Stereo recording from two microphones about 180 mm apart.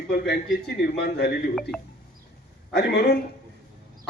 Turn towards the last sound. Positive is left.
turn(degrees=65)  # may be behind; listen again after turning